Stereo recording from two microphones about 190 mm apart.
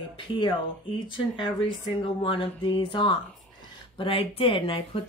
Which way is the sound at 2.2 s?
25° left (ahead or behind).